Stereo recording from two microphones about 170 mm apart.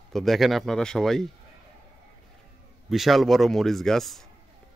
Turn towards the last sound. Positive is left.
turn(degrees=0)  # may be behind; listen again after turning